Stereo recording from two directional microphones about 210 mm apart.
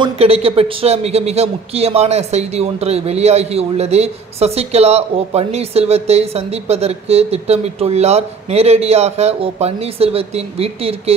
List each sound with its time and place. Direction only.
0.0 s a man's voice: 30° right (ahead or behind)